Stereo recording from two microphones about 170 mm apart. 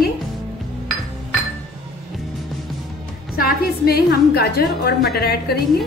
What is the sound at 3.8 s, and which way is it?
A woman's voice, 65° left (ahead or behind).